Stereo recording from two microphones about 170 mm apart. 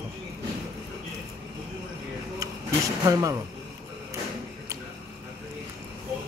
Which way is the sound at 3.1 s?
20° right (ahead or behind).